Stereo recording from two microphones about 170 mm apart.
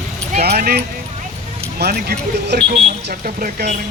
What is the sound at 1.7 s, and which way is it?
Speech, 70° right (ahead or behind).